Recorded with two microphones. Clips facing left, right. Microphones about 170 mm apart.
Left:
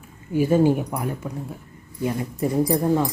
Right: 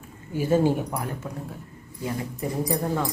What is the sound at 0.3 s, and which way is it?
Speech, 15° left (ahead or behind).